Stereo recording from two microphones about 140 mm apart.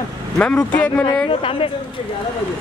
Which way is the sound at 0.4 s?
10° left (ahead or behind).